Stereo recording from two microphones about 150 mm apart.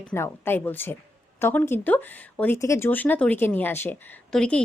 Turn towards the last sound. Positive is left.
turn(degrees=5)  # may be behind; listen again after turning